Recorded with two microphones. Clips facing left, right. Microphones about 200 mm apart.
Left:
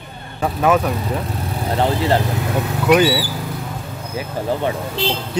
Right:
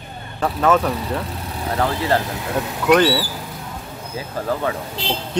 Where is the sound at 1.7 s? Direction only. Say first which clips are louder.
Left 2 dB; 25° left (ahead or behind).